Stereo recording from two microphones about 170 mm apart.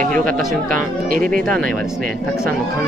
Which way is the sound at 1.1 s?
55° right (ahead or behind).